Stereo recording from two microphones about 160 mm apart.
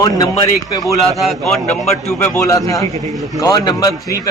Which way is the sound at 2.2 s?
15° left (ahead or behind).